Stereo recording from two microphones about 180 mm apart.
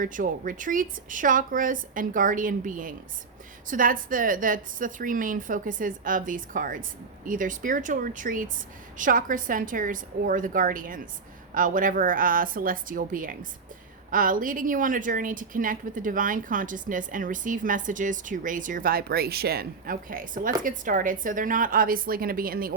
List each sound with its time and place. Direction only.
0.0 s a woman's voice: 50° right (ahead or behind)